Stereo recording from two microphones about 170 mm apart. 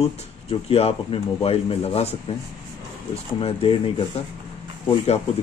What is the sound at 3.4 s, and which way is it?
Speech, 35° left (ahead or behind).